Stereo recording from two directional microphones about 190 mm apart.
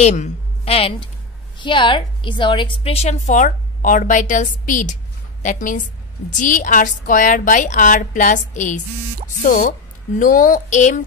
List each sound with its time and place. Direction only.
0.0 s a woman's voice: 35° left (ahead or behind)